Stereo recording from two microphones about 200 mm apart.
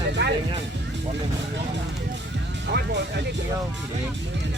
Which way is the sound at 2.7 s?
60° right (ahead or behind).